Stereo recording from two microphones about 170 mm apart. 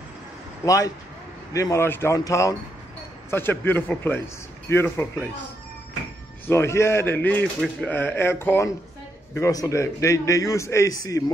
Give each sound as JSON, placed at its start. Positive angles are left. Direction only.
{"t": 0.7, "sound": "a man's voice", "side_deg": 20}
{"t": 6.4, "sound": "a man's voice", "side_deg": 15}